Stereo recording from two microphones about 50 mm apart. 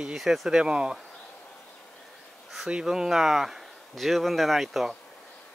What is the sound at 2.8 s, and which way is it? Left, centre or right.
A man's voice, centre.